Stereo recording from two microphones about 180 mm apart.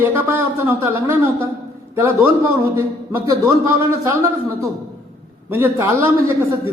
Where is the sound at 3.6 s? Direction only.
15° right (ahead or behind).